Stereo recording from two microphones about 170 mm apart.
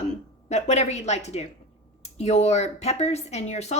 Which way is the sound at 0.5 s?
40° left (ahead or behind).